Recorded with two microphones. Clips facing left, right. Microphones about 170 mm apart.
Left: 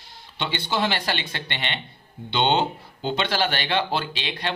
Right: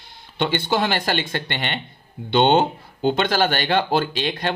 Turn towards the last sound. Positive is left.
turn(degrees=-45)  # may be behind; listen again after turning